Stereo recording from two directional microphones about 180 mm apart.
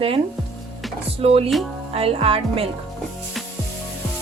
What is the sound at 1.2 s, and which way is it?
A woman's voice, 35° right (ahead or behind).